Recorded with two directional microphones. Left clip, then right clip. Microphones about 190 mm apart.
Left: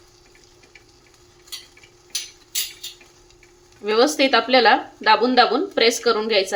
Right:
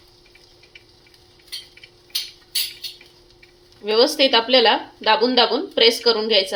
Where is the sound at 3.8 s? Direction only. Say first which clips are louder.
Right 1 dB; 10° left (ahead or behind).